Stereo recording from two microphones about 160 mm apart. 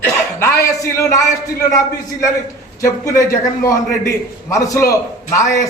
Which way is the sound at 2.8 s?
20° left (ahead or behind).